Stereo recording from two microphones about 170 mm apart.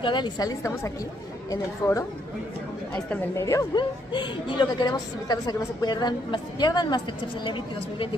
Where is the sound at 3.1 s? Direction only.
15° left (ahead or behind).